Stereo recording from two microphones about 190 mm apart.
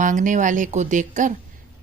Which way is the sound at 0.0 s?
40° right (ahead or behind).